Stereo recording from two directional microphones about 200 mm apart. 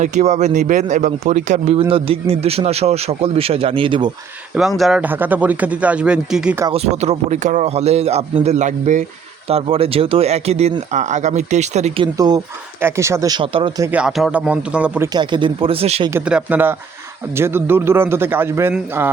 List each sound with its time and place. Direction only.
0.0 s speech: 35° right (ahead or behind)
4.8 s speech: 5° right (ahead or behind)
6.7 s speech: 30° right (ahead or behind)
12.1 s speech: 20° right (ahead or behind)
13.9 s a man's voice: 5° right (ahead or behind)
15.1 s speech: 25° right (ahead or behind)
16.0 s speech: 10° right (ahead or behind)